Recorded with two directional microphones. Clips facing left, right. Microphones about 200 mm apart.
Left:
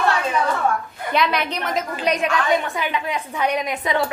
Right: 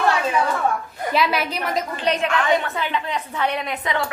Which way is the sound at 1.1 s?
5° right (ahead or behind).